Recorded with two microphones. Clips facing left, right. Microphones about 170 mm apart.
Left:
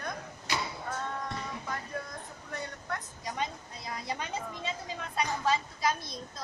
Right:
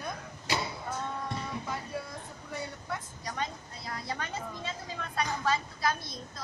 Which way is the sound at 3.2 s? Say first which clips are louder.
Left 1 dB; 20° left (ahead or behind).